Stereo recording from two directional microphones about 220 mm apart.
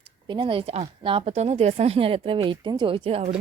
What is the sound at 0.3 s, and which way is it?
A woman's voice, 25° right (ahead or behind).